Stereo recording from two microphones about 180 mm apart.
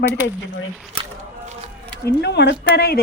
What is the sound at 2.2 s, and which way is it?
Speech, 70° left (ahead or behind).